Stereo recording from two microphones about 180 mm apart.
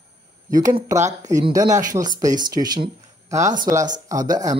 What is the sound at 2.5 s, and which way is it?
Speech, 20° right (ahead or behind).